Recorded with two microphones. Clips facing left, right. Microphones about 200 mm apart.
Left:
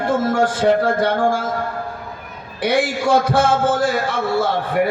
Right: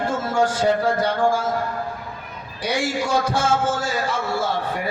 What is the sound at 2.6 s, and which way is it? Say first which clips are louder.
A man's voice: left 5 dB; 60° left (ahead or behind).